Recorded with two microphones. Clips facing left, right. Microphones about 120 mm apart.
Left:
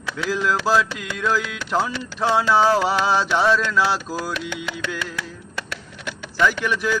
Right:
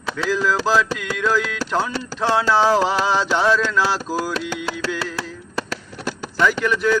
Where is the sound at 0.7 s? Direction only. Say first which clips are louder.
Right 1 dB; 5° left (ahead or behind).